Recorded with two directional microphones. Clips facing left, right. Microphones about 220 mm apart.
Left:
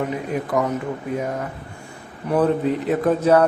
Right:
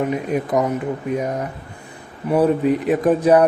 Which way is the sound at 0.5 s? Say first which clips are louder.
Right 2 dB; 20° right (ahead or behind).